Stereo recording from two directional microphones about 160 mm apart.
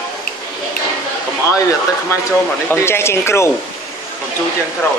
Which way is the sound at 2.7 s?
15° left (ahead or behind).